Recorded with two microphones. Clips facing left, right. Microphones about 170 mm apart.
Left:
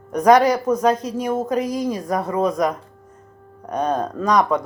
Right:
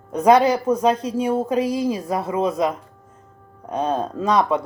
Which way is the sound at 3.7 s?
25° right (ahead or behind).